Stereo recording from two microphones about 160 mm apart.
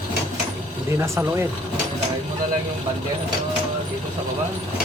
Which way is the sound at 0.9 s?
15° right (ahead or behind).